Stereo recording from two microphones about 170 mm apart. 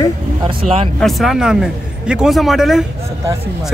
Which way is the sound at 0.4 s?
30° right (ahead or behind).